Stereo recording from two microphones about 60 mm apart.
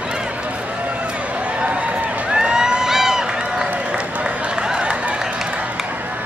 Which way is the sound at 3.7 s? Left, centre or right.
Centre.